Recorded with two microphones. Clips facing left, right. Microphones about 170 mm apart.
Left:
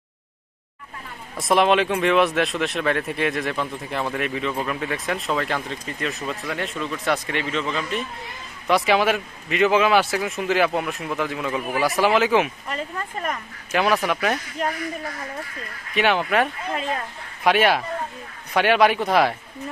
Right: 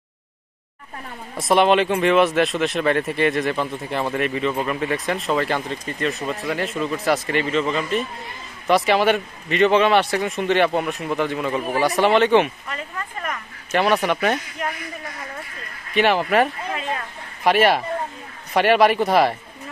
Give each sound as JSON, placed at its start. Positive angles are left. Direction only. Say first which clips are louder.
{"t": 1.3, "sound": "speech", "louder": "right 2 dB", "side_deg": 0}
{"t": 12.6, "sound": "speech", "louder": "left 2 dB", "side_deg": 30}
{"t": 13.7, "sound": "speech", "louder": "right 2 dB", "side_deg": 0}
{"t": 15.9, "sound": "speech", "louder": "right 2 dB", "side_deg": 0}